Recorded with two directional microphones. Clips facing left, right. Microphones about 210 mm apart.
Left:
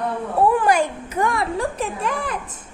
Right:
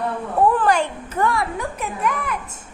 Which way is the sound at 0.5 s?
10° left (ahead or behind).